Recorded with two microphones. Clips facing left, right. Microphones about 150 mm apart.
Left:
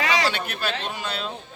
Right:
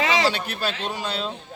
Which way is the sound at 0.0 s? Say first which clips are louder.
Right 2 dB; 25° right (ahead or behind).